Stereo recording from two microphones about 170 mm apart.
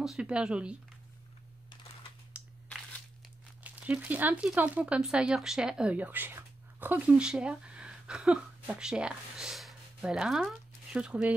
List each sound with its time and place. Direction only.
0.0 s speech: 5° right (ahead or behind)
3.6 s speech: 10° right (ahead or behind)